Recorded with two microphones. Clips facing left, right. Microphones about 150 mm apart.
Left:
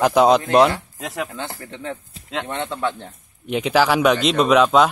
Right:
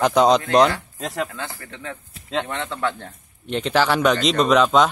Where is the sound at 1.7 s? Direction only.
25° left (ahead or behind).